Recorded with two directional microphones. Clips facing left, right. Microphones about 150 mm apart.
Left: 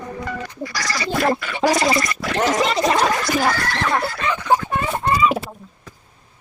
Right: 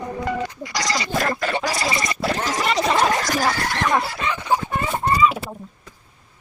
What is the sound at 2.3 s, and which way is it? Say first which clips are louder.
Gargling: left 6 dB; 90° left.